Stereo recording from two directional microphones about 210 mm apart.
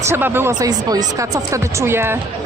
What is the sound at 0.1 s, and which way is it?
Speech, 10° right (ahead or behind).